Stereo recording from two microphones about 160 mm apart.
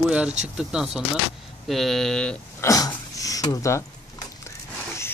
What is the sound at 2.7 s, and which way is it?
Speech, 20° left (ahead or behind).